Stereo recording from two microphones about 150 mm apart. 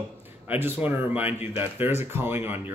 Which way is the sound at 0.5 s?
10° right (ahead or behind).